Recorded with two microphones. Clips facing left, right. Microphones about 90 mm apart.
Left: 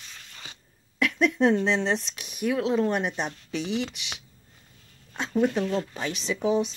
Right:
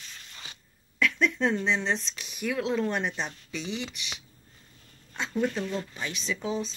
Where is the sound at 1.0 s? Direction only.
15° left (ahead or behind).